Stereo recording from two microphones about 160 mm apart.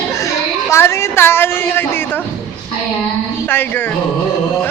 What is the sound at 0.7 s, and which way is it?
Speech, 15° left (ahead or behind).